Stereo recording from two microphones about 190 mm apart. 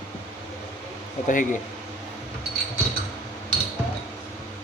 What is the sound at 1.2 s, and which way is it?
Speech, 45° left (ahead or behind).